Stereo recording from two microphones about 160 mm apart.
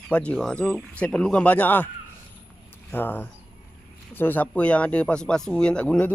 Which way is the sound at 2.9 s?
10° left (ahead or behind).